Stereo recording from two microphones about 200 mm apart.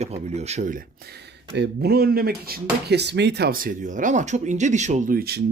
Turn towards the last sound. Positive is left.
turn(degrees=-50)  # may be behind; listen again after turning